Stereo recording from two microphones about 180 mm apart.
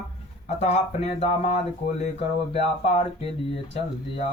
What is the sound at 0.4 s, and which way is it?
Speech, 40° left (ahead or behind).